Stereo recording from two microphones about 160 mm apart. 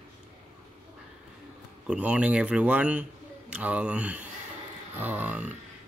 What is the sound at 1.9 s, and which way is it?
A man's voice, 10° right (ahead or behind).